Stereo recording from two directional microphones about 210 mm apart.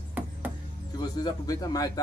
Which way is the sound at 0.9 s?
20° left (ahead or behind).